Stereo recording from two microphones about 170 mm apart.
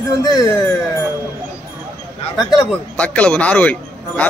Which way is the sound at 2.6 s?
5° left (ahead or behind).